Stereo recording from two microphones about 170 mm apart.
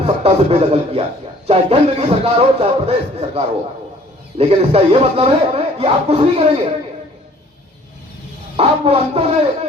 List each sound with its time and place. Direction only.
0.0 s speech: 40° right (ahead or behind)
8.5 s speech: 35° right (ahead or behind)